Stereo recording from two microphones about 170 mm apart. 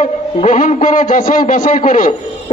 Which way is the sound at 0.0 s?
40° left (ahead or behind).